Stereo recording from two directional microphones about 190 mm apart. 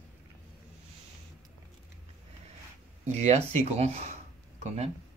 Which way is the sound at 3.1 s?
35° right (ahead or behind).